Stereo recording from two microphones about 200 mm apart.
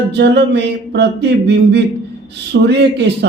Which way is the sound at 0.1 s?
55° right (ahead or behind).